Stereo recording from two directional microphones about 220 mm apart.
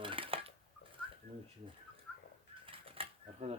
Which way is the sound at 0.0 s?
25° right (ahead or behind).